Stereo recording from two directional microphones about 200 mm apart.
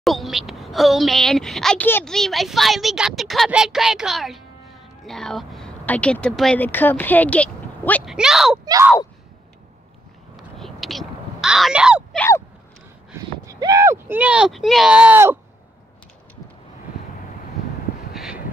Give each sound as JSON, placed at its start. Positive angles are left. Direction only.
{"t": 0.0, "sound": "speech", "side_deg": 0}
{"t": 8.6, "sound": "speech", "side_deg": -15}
{"t": 10.3, "sound": "caw", "side_deg": 0}
{"t": 12.2, "sound": "crow", "side_deg": 10}
{"t": 13.5, "sound": "speech", "side_deg": -15}
{"t": 18.1, "sound": "vehicle", "side_deg": -5}